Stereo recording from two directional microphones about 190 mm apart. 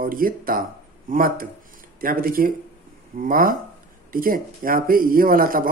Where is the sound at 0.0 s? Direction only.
50° right (ahead or behind).